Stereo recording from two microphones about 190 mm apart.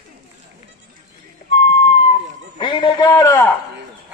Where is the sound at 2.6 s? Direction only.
25° left (ahead or behind).